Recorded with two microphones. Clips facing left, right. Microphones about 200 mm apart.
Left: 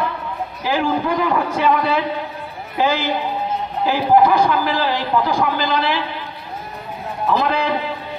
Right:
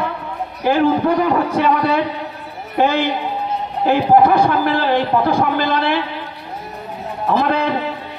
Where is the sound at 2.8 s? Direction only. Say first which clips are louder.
Right 3 dB; 60° right (ahead or behind).